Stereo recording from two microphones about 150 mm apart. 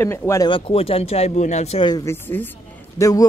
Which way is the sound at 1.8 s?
25° left (ahead or behind).